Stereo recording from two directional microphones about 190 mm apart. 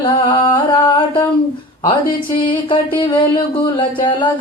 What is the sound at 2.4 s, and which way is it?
Music, 25° left (ahead or behind).